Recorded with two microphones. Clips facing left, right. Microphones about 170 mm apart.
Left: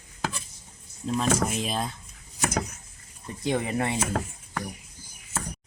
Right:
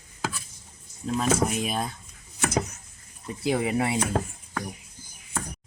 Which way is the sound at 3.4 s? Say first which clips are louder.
Right 2 dB; 10° right (ahead or behind).